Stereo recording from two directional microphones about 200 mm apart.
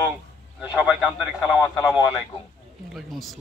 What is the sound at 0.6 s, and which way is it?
Speech, 5° right (ahead or behind).